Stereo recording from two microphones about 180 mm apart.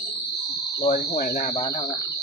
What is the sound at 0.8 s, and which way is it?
Speech, 60° left (ahead or behind).